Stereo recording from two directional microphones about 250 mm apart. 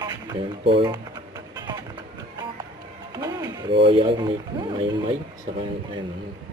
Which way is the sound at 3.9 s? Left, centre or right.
Centre.